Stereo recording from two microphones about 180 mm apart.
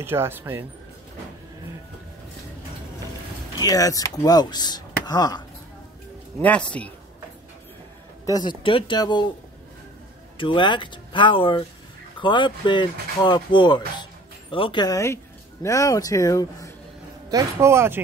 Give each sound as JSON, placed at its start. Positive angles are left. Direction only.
{"t": 0.0, "sound": "speech", "side_deg": -15}
{"t": 3.5, "sound": "speech", "side_deg": 20}
{"t": 6.4, "sound": "a man's voice", "side_deg": 5}
{"t": 8.3, "sound": "speech", "side_deg": 25}
{"t": 10.3, "sound": "speech", "side_deg": 30}
{"t": 17.3, "sound": "speech", "side_deg": -15}